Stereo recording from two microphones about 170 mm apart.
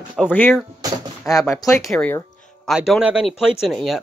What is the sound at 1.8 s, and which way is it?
Speech, 5° left (ahead or behind).